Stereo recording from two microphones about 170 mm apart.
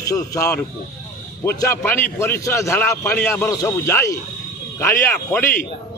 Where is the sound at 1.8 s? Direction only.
10° left (ahead or behind).